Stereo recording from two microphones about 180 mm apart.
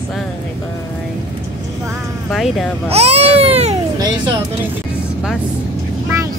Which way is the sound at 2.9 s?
35° right (ahead or behind).